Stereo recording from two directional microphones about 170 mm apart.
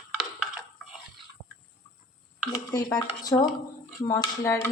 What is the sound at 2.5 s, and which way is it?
Speech, 20° left (ahead or behind).